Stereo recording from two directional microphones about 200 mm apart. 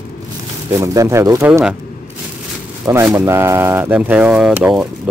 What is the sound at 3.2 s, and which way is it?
Speech, 15° right (ahead or behind).